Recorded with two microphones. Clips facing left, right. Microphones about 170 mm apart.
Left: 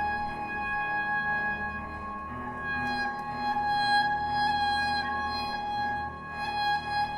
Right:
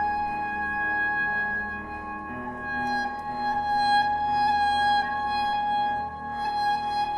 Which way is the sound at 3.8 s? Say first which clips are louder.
Right 4 dB; 20° right (ahead or behind).